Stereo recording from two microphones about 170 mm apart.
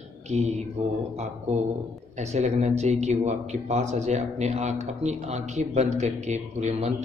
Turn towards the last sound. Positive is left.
turn(degrees=-40)  # may be behind; listen again after turning